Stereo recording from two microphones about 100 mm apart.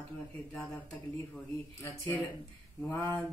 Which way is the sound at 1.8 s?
15° left (ahead or behind).